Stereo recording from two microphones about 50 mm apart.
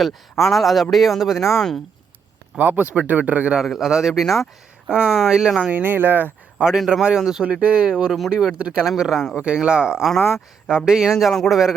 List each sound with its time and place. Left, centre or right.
0.0 s a man's voice: centre
2.6 s speech: right
3.7 s a man's voice: centre
4.9 s speech: centre
5.7 s speech: right
6.7 s speech: centre
7.4 s speech: right
9.0 s a man's voice: centre
9.3 s speech: centre
10.2 s speech: left
10.7 s a man's voice: centre